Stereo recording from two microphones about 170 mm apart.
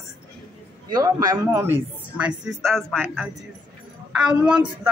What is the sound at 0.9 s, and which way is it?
Speech, 20° right (ahead or behind).